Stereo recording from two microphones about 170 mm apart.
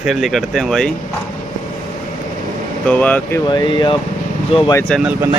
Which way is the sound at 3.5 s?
25° left (ahead or behind).